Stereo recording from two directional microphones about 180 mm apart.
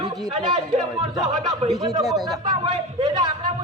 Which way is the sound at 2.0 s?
Centre (ahead or behind).